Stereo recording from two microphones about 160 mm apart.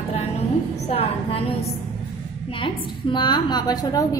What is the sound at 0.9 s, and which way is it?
Speech, 35° left (ahead or behind).